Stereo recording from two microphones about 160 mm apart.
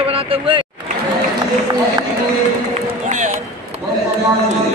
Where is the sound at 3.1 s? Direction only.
50° right (ahead or behind).